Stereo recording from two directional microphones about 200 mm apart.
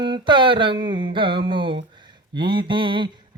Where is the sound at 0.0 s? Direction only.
25° right (ahead or behind).